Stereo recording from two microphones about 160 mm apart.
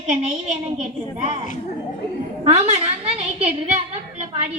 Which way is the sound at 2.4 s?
40° right (ahead or behind).